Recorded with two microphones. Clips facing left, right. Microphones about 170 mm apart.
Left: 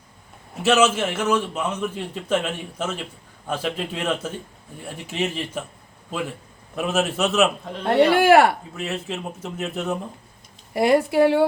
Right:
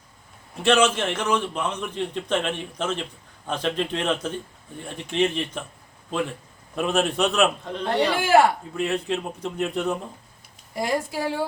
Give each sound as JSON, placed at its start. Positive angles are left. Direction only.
{"t": 0.6, "sound": "a man's voice", "side_deg": 5}
{"t": 6.7, "sound": "a man's voice", "side_deg": 5}
{"t": 8.1, "sound": "speech", "side_deg": 60}
{"t": 8.7, "sound": "a man's voice", "side_deg": 0}
{"t": 10.8, "sound": "speech", "side_deg": 65}